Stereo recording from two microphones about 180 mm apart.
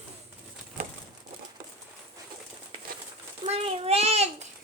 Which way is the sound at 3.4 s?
30° right (ahead or behind).